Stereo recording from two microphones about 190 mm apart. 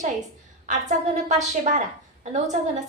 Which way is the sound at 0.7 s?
40° right (ahead or behind).